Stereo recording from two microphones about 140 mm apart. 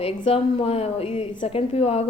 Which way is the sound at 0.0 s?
40° left (ahead or behind).